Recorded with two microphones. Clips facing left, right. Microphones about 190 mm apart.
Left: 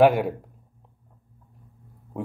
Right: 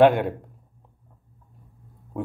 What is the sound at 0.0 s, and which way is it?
Speech, 5° left (ahead or behind).